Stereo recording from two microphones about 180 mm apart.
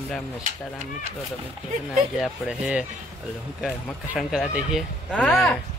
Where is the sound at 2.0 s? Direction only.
Centre (ahead or behind).